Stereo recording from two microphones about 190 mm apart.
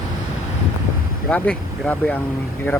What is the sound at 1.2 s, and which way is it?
Speech, 5° left (ahead or behind).